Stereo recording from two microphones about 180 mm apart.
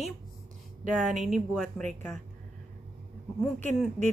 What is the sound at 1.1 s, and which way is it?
Speech, centre (ahead or behind).